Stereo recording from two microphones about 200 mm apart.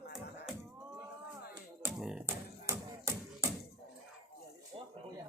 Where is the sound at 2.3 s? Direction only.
15° right (ahead or behind).